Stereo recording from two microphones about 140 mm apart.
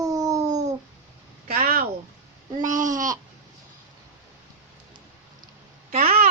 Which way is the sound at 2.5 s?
65° right (ahead or behind).